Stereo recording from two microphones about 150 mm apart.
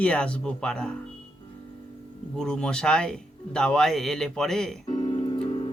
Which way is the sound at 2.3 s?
5° left (ahead or behind).